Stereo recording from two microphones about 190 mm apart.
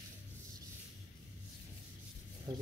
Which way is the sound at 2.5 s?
20° right (ahead or behind).